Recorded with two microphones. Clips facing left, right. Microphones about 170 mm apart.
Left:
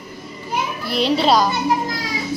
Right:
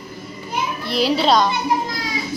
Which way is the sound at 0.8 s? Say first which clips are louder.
Even; centre (ahead or behind).